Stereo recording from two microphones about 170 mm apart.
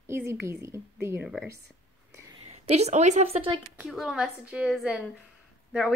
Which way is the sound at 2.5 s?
40° right (ahead or behind).